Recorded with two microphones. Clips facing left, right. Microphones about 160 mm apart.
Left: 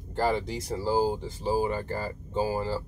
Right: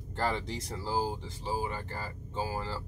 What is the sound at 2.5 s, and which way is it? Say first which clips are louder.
Speech: left 7 dB; 15° left (ahead or behind).